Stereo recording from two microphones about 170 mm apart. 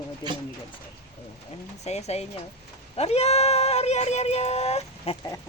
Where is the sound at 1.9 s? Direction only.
40° left (ahead or behind).